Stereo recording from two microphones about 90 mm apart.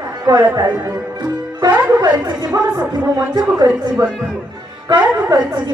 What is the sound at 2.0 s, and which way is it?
Speech, 45° right (ahead or behind).